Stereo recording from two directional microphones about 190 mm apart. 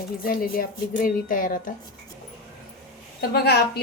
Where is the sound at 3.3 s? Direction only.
55° left (ahead or behind).